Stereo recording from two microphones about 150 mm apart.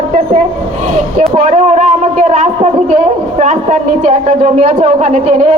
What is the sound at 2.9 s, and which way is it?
A woman's voice, 50° right (ahead or behind).